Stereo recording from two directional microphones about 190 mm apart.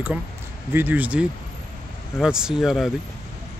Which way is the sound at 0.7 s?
10° right (ahead or behind).